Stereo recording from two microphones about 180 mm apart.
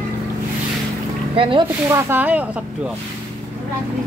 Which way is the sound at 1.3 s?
30° right (ahead or behind).